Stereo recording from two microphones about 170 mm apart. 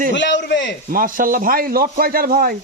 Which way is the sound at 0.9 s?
55° right (ahead or behind).